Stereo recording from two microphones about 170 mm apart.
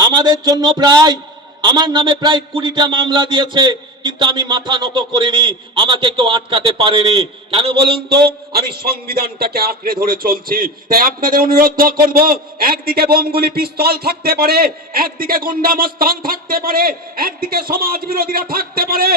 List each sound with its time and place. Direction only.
0.0 s a man's voice: 25° right (ahead or behind)
8.5 s a man's voice: 65° right (ahead or behind)